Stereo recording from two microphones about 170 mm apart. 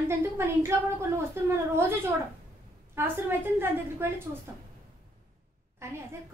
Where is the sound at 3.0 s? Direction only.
10° right (ahead or behind).